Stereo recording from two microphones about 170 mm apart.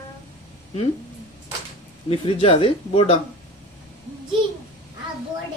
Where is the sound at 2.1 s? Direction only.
35° left (ahead or behind).